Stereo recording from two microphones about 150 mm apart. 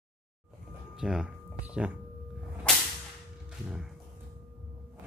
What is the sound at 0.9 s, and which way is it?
Speech, 5° right (ahead or behind).